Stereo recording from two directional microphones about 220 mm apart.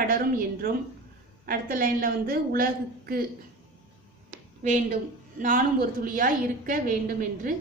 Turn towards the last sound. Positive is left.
turn(degrees=-40)  # may be behind; listen again after turning